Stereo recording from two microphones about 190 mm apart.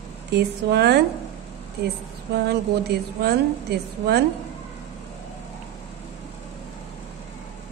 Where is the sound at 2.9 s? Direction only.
60° right (ahead or behind).